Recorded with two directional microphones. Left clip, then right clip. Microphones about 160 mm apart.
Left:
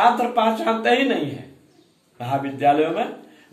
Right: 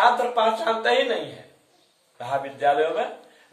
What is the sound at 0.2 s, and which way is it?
Speech, centre (ahead or behind).